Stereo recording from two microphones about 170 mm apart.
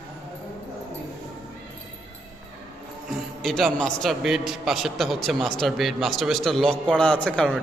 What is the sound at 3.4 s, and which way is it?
A man's voice, centre (ahead or behind).